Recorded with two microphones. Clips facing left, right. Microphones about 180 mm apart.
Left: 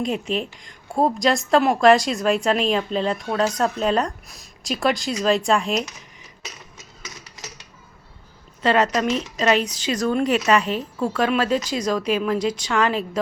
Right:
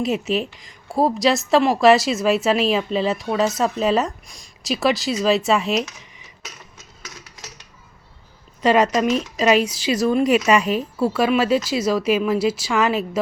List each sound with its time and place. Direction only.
0.0 s a woman's voice: 5° right (ahead or behind)
8.6 s speech: 10° right (ahead or behind)